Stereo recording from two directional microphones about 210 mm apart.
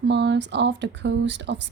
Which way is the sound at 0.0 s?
55° right (ahead or behind).